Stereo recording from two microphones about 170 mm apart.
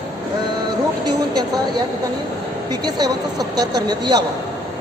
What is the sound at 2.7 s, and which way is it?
Speech, 25° right (ahead or behind).